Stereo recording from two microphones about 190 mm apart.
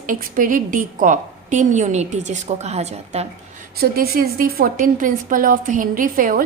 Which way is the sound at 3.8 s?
50° right (ahead or behind).